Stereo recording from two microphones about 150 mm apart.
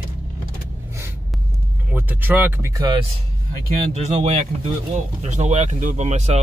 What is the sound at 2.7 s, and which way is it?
Speech, 30° right (ahead or behind).